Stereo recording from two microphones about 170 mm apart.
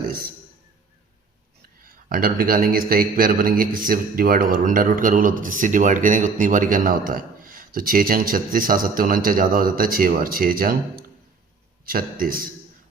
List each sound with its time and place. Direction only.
2.0 s a man's voice: 55° right (ahead or behind)
11.9 s a man's voice: 60° right (ahead or behind)